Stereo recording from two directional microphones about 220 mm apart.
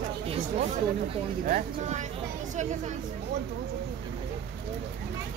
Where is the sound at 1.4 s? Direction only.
35° right (ahead or behind).